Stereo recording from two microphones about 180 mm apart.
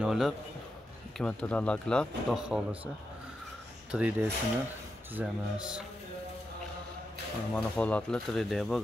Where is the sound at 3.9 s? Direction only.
5° right (ahead or behind).